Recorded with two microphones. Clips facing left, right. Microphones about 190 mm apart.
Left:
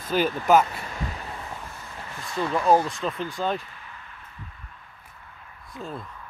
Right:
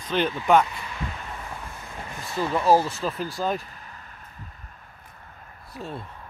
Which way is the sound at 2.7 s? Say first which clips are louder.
Right 1 dB; 5° right (ahead or behind).